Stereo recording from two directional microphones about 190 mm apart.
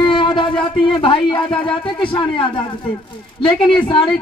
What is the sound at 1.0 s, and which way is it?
A man's voice, 25° left (ahead or behind).